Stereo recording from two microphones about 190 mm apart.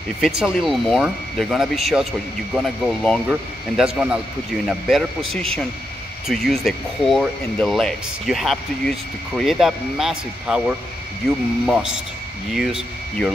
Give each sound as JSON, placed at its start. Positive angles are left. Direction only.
{"t": 0.4, "sound": "speech", "side_deg": 0}